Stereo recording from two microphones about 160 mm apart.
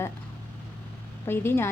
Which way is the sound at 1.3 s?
15° left (ahead or behind).